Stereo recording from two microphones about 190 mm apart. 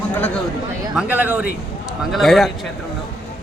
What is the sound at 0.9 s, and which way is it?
Speech, 10° right (ahead or behind).